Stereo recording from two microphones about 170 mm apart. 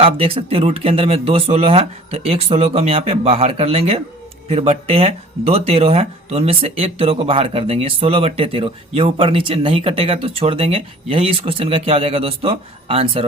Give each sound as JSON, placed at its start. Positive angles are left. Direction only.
{"t": 0.0, "sound": "speech", "side_deg": -35}